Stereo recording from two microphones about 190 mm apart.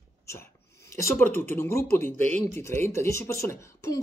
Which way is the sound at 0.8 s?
15° left (ahead or behind).